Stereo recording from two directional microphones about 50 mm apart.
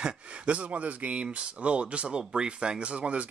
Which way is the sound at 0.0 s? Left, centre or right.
Right.